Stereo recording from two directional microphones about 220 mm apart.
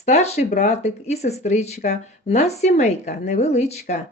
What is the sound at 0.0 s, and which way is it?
Speech, 30° left (ahead or behind).